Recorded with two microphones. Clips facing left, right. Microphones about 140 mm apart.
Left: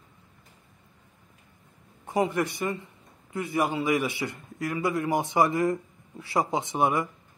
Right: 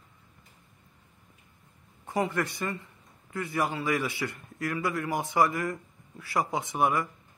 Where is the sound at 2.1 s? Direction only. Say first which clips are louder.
Left 3 dB; 20° left (ahead or behind).